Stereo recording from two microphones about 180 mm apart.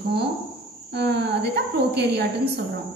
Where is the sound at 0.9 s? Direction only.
70° right (ahead or behind).